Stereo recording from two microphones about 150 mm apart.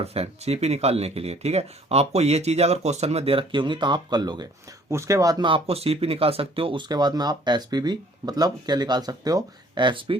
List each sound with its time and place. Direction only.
0.0 s speech: 45° right (ahead or behind)